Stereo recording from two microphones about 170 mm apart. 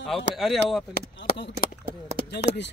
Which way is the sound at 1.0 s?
80° left.